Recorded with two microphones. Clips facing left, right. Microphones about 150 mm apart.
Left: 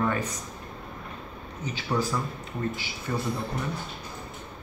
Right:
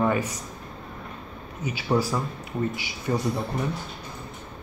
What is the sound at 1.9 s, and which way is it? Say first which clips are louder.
Speech: right 4 dB; 30° right (ahead or behind).